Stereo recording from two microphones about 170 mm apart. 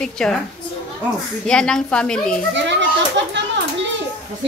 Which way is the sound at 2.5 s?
90° right.